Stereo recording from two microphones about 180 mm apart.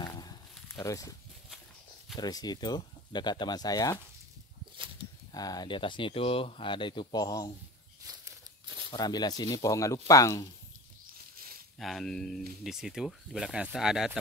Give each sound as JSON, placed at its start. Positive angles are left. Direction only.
{"t": 0.0, "sound": "a sound", "side_deg": 20}
{"t": 2.1, "sound": "speech", "side_deg": 20}
{"t": 5.3, "sound": "speech", "side_deg": 20}
{"t": 8.9, "sound": "speech", "side_deg": 25}
{"t": 11.3, "sound": "a sound", "side_deg": -55}
{"t": 11.8, "sound": "speech", "side_deg": 0}